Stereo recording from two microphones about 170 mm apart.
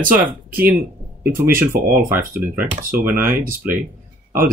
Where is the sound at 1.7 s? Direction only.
55° right (ahead or behind).